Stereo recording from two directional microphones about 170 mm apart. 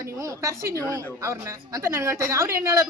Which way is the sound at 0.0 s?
20° right (ahead or behind).